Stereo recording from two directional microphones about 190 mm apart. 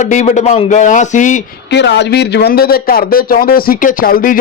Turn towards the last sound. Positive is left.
turn(degrees=50)  # may be behind; listen again after turning